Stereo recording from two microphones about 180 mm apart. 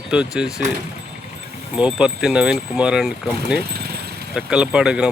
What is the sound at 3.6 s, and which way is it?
Vehicle, 60° right (ahead or behind).